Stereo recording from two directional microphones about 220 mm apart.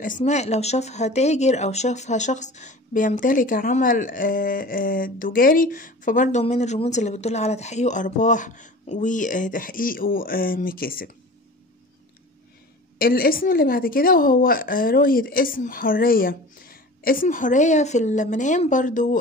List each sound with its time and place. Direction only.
0.0 s speech: 35° left (ahead or behind)
13.0 s speech: 40° left (ahead or behind)